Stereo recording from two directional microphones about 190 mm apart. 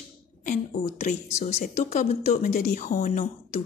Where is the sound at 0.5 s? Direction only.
40° left (ahead or behind).